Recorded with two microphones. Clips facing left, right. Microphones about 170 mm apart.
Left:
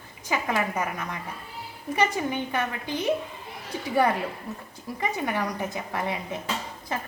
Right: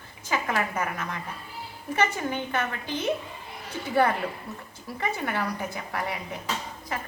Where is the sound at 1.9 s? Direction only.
15° left (ahead or behind).